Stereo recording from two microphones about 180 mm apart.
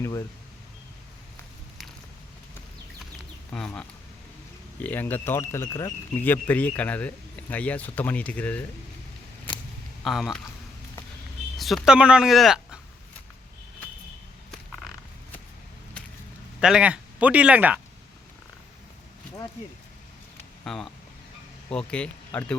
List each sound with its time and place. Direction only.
0.0 s speech: 15° left (ahead or behind)
3.5 s speech: 5° left (ahead or behind)
10.0 s speech: centre (ahead or behind)
11.5 s speech: centre (ahead or behind)
16.6 s speech: 5° right (ahead or behind)
20.7 s speech: centre (ahead or behind)